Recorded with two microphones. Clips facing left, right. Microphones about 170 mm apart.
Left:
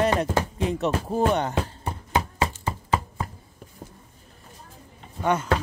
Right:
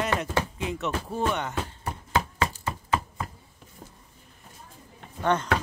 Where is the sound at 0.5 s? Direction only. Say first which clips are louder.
Left 5 dB; 35° left (ahead or behind).